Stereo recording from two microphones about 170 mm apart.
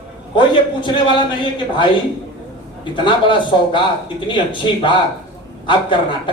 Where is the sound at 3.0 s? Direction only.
30° left (ahead or behind).